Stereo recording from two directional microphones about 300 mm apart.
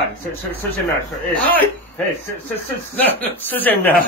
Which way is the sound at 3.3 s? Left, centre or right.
Centre.